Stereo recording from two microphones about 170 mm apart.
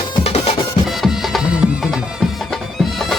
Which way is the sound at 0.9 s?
Centre (ahead or behind).